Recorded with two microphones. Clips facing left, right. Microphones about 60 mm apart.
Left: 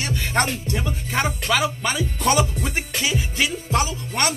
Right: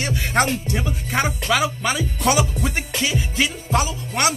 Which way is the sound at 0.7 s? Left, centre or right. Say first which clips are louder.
Right 1 dB; centre.